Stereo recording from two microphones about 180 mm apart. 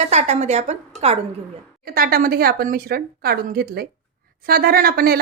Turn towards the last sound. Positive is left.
turn(degrees=-55)  # may be behind; listen again after turning